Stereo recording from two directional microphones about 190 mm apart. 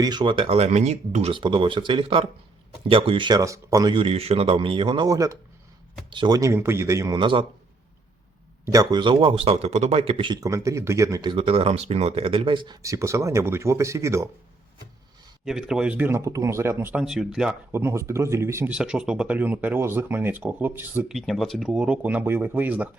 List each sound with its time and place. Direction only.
0.0 s a man's voice: 25° right (ahead or behind)
8.6 s a man's voice: 15° right (ahead or behind)
15.4 s speech: centre (ahead or behind)